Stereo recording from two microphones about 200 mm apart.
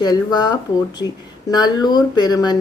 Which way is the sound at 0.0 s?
20° left (ahead or behind).